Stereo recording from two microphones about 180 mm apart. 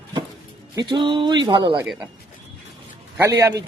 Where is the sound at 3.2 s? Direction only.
15° right (ahead or behind).